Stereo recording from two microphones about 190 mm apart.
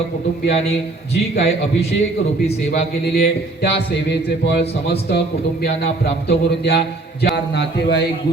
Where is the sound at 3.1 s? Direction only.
60° left (ahead or behind).